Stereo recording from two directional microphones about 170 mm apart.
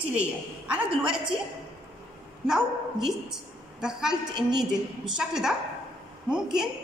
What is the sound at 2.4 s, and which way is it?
Speech, centre (ahead or behind).